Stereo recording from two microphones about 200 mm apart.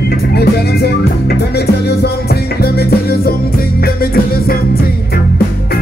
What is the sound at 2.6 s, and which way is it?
Music, 50° left (ahead or behind).